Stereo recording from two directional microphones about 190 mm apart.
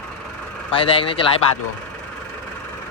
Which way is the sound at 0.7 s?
30° left (ahead or behind).